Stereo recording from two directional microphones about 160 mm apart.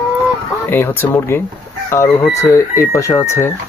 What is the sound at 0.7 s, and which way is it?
Speech, 15° left (ahead or behind).